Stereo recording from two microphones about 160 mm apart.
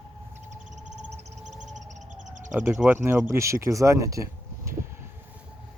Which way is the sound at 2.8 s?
15° right (ahead or behind).